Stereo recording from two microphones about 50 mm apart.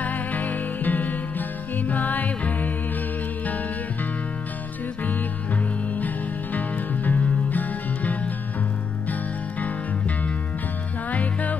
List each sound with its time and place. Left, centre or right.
0.0 s music: left
5.9 s music: left
9.6 s music: left